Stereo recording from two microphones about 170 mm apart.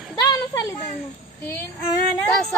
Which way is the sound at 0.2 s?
20° left (ahead or behind).